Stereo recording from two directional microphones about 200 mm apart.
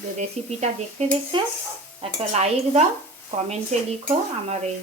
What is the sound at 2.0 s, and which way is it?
Dishes, 30° right (ahead or behind).